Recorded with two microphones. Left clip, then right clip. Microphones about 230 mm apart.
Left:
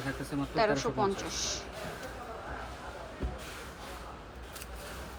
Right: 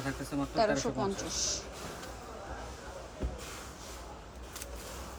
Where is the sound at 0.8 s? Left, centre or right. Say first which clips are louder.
Left 3 dB; centre.